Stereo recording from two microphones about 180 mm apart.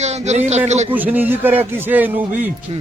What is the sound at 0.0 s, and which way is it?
Speech, 40° right (ahead or behind).